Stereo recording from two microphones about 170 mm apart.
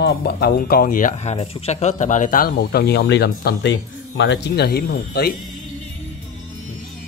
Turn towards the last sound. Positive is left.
turn(degrees=65)  # may be behind; listen again after turning